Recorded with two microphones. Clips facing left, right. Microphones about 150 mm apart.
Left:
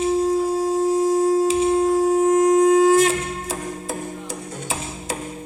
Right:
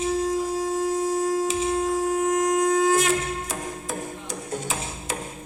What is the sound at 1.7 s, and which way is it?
Shofar, 30° left (ahead or behind).